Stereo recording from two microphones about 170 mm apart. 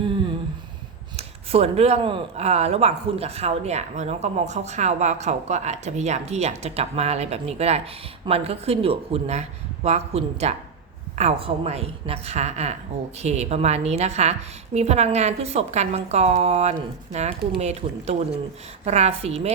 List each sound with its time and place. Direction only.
1.1 s speech: 35° right (ahead or behind)